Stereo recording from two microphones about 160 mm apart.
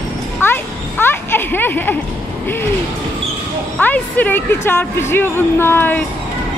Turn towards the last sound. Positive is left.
turn(degrees=10)  # may be behind; listen again after turning